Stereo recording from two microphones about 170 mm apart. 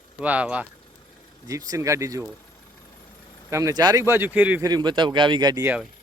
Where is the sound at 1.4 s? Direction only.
20° right (ahead or behind).